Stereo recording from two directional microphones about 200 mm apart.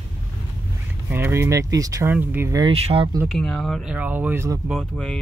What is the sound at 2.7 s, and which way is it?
Speech, 30° right (ahead or behind).